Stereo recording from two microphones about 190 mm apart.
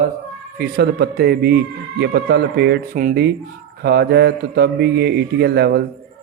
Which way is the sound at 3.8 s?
60° right (ahead or behind).